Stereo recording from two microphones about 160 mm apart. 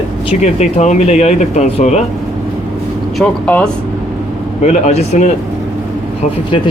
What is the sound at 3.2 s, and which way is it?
Speech, 10° left (ahead or behind).